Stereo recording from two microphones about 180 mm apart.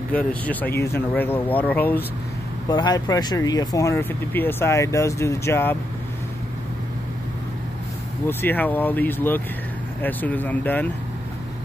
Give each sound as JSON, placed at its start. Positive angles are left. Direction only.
{"t": 0.1, "sound": "speech", "side_deg": 5}
{"t": 2.7, "sound": "speech", "side_deg": 25}
{"t": 8.3, "sound": "speech", "side_deg": 10}